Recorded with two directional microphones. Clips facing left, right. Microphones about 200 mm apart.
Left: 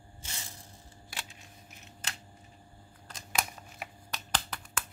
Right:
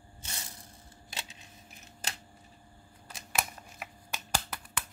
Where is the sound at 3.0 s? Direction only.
5° right (ahead or behind).